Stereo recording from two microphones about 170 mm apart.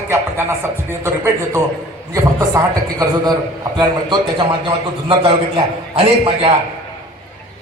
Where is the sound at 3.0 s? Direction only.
20° right (ahead or behind).